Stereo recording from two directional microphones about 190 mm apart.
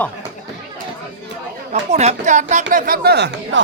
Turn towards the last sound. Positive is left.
turn(degrees=-60)  # may be behind; listen again after turning